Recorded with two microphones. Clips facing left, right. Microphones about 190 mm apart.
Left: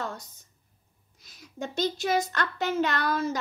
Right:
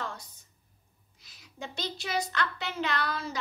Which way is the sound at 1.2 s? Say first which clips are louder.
Left 6 dB; 45° left (ahead or behind).